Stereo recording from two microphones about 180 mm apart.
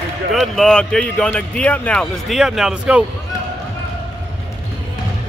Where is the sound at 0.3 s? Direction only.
Centre (ahead or behind).